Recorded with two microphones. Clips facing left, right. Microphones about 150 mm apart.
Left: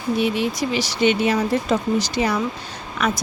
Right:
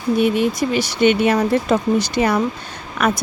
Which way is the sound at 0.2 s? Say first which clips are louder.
Right 5 dB; 50° right (ahead or behind).